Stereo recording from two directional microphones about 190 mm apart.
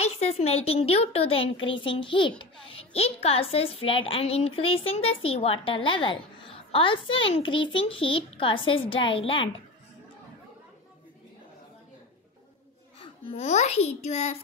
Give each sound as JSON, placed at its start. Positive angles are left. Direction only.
{"t": 0.0, "sound": "a woman's voice", "side_deg": 35}
{"t": 13.0, "sound": "a woman's voice", "side_deg": 30}